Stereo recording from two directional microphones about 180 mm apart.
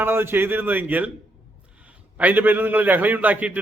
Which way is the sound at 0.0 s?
10° right (ahead or behind).